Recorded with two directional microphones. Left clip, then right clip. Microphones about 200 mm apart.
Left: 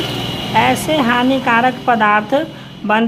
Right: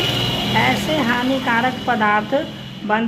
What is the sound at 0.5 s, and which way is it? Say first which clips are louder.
Speech: left 6 dB; 30° left (ahead or behind).